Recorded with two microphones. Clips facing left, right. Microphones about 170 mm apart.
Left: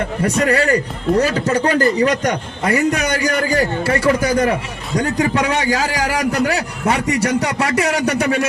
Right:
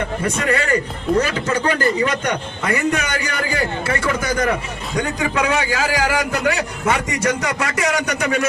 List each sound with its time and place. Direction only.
0.3 s a man's voice: 35° left (ahead or behind)